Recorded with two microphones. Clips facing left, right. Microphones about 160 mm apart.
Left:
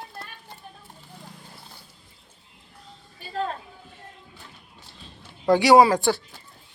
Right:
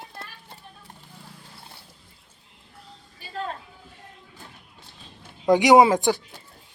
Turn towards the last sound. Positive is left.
turn(degrees=-20)  # may be behind; listen again after turning